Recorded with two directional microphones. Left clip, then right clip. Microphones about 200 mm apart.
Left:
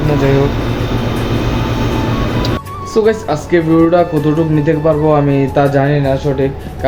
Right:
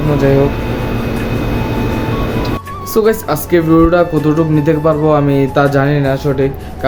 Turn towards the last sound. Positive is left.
turn(degrees=-20)  # may be behind; listen again after turning